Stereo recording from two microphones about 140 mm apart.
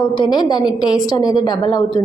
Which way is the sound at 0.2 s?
35° left (ahead or behind).